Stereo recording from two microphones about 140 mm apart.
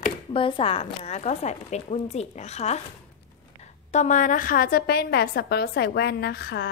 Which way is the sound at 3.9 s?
60° left (ahead or behind).